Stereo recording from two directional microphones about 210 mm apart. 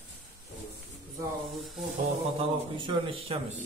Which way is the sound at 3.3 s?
25° right (ahead or behind).